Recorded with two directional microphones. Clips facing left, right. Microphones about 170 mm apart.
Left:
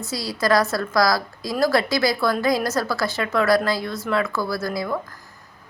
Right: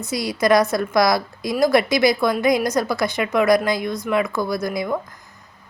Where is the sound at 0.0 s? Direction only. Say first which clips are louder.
Right 4 dB; 20° right (ahead or behind).